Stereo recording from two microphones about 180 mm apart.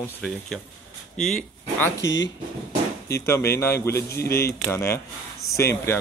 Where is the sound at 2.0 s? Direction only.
90° left.